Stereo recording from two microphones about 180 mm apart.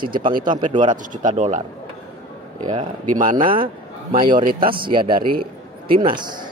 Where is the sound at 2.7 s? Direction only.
45° right (ahead or behind).